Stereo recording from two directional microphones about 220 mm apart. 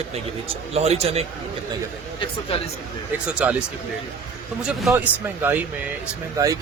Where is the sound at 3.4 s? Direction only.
5° right (ahead or behind).